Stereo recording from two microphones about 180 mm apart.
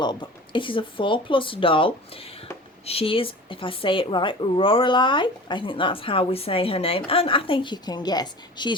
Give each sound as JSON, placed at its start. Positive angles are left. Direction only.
{"t": 0.0, "sound": "speech", "side_deg": 25}